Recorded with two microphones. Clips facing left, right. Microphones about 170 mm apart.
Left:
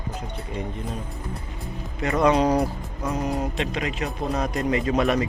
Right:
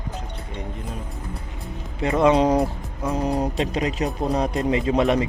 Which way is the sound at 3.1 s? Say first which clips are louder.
Right 4 dB; 35° right (ahead or behind).